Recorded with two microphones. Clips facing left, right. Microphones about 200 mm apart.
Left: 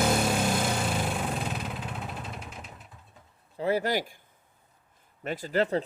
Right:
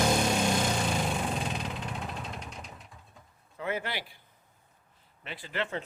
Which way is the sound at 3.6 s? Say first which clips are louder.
Left 7 dB; 35° left (ahead or behind).